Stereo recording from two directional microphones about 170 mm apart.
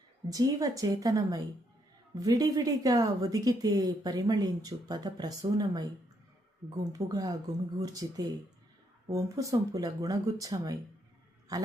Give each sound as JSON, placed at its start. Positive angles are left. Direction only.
{"t": 0.3, "sound": "a man's voice", "side_deg": -20}